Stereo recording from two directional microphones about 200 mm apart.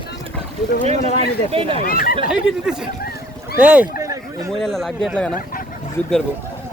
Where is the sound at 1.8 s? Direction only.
45° left (ahead or behind).